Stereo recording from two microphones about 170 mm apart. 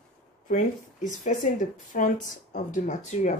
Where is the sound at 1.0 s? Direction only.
50° left (ahead or behind).